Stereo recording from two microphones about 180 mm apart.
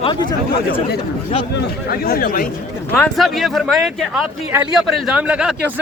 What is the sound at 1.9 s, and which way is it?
Speech, 55° left (ahead or behind).